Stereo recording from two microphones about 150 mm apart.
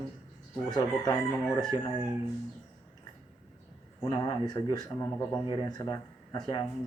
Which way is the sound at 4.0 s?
25° left (ahead or behind).